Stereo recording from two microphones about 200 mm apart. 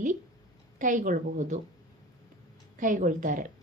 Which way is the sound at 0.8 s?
40° right (ahead or behind).